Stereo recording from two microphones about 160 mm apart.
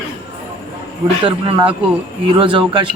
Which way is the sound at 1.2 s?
30° right (ahead or behind).